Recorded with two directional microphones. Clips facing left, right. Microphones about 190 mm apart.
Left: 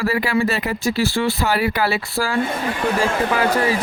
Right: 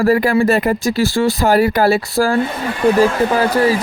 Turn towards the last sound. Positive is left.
turn(degrees=-35)  # may be behind; listen again after turning